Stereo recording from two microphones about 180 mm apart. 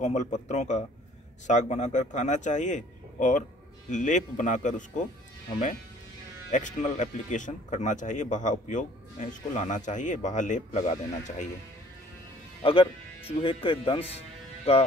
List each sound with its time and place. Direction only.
0.0 s speech: 40° left (ahead or behind)
6.5 s speech: 45° left (ahead or behind)
13.4 s speech: 30° left (ahead or behind)